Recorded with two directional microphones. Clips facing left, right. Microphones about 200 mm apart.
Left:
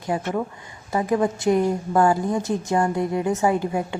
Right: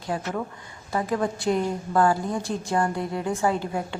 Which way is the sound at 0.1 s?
10° left (ahead or behind).